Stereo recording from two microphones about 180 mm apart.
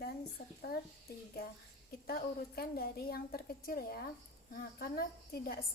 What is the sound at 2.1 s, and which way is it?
A woman's voice, 55° left (ahead or behind).